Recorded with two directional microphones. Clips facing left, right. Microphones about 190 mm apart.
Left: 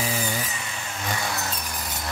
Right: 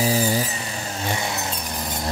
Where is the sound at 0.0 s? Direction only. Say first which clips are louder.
Right 7 dB; 35° right (ahead or behind).